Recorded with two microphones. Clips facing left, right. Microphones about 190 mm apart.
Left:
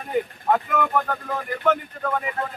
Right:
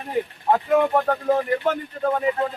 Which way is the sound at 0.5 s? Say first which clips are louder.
Right 4 dB; 30° right (ahead or behind).